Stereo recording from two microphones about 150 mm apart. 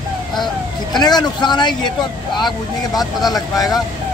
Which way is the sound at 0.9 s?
30° left (ahead or behind).